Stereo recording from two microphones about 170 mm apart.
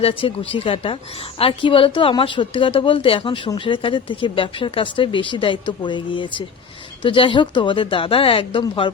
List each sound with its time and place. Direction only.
0.0 s a woman's voice: 30° left (ahead or behind)